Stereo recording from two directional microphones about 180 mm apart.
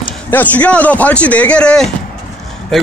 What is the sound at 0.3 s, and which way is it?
A man's voice, 10° left (ahead or behind).